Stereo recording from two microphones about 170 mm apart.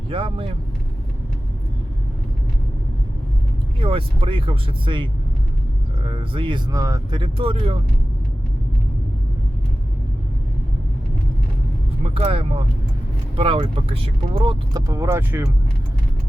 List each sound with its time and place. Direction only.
0.1 s speech: 30° right (ahead or behind)
3.8 s speech: 30° right (ahead or behind)
6.1 s speech: 30° right (ahead or behind)
7.2 s speech: 30° right (ahead or behind)
12.0 s speech: 30° right (ahead or behind); by 15.4 s 15° right (ahead or behind)